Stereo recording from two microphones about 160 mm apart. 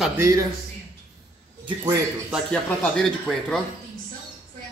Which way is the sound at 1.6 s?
25° right (ahead or behind).